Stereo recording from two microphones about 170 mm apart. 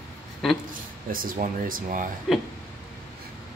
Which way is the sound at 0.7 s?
55° right (ahead or behind).